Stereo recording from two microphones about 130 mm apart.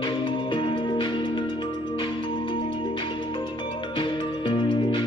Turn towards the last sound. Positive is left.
turn(degrees=40)  # may be behind; listen again after turning